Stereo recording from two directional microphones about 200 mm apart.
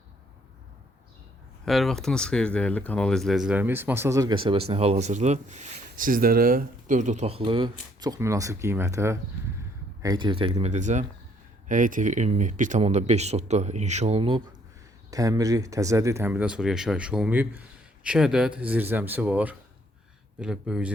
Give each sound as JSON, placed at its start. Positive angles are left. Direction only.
{"t": 1.6, "sound": "speech", "side_deg": 0}